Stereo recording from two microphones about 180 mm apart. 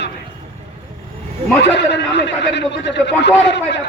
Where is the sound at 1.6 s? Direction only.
75° left (ahead or behind).